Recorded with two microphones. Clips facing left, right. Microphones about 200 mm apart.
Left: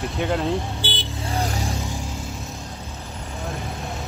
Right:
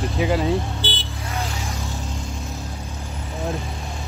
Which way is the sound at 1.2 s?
30° left (ahead or behind).